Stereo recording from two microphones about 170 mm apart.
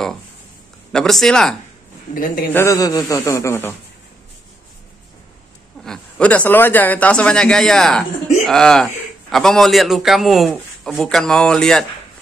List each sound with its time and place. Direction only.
0.9 s a man's voice: centre (ahead or behind)
2.1 s a man's voice: 55° left (ahead or behind)
2.5 s speech: 15° left (ahead or behind)
5.9 s a man's voice: 5° left (ahead or behind)